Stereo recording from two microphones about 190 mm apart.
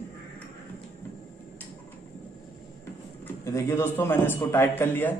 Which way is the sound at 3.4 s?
15° left (ahead or behind).